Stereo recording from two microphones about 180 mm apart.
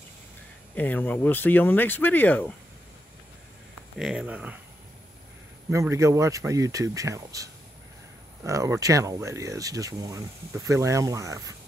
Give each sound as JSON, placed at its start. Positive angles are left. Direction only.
{"t": 0.7, "sound": "speech", "side_deg": 10}
{"t": 4.0, "sound": "speech", "side_deg": -5}
{"t": 5.7, "sound": "speech", "side_deg": -15}
{"t": 8.5, "sound": "speech", "side_deg": -20}